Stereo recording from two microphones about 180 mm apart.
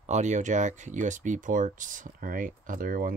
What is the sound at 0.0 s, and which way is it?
Speech, 40° right (ahead or behind).